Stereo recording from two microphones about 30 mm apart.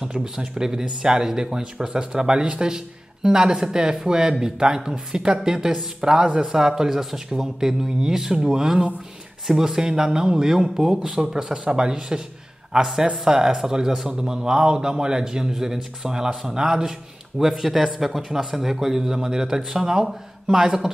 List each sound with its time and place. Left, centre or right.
0.0 s speech: right
2.7 s a man's voice: right
17.4 s a man's voice: centre